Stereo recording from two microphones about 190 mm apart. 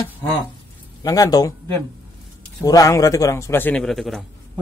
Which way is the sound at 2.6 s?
15° left (ahead or behind).